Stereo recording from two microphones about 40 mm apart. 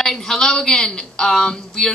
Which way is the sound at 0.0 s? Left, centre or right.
Centre.